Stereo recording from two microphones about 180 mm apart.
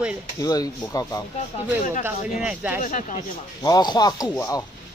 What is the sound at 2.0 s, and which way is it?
Speech, 5° right (ahead or behind).